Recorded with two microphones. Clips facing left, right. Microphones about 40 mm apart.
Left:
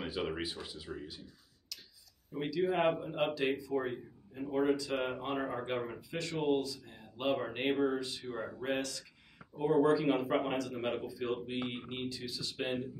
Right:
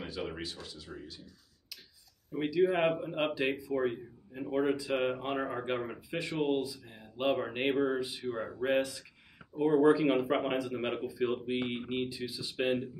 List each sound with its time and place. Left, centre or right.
0.0 s speech: centre
2.4 s speech: centre